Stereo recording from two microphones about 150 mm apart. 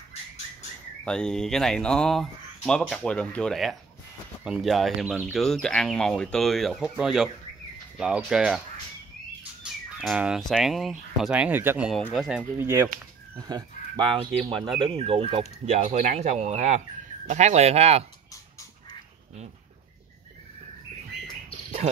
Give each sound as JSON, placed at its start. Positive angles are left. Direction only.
{"t": 1.0, "sound": "speech", "side_deg": 5}
{"t": 9.9, "sound": "speech", "side_deg": -5}
{"t": 12.6, "sound": "speech", "side_deg": -15}
{"t": 15.3, "sound": "speech", "side_deg": -50}
{"t": 18.3, "sound": "dog", "side_deg": 20}